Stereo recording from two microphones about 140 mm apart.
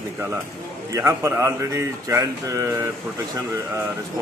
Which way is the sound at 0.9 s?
20° right (ahead or behind).